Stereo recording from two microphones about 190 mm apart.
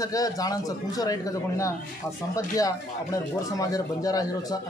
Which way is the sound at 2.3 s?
15° left (ahead or behind).